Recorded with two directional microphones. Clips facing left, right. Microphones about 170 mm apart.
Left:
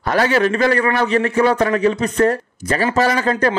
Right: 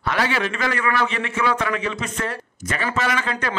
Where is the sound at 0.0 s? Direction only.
40° left (ahead or behind).